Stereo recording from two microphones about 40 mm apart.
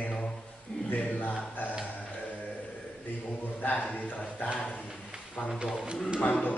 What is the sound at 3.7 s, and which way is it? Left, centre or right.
Speech, left.